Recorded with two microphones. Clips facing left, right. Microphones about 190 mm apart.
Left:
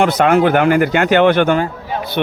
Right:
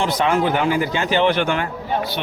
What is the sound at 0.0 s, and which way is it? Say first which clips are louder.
Speech: left 6 dB; 65° left (ahead or behind).